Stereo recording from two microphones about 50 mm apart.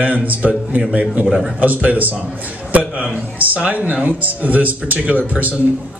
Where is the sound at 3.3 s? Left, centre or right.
Right.